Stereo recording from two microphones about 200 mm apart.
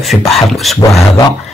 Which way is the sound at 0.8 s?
15° left (ahead or behind).